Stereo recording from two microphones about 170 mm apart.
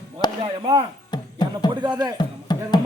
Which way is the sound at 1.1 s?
25° left (ahead or behind).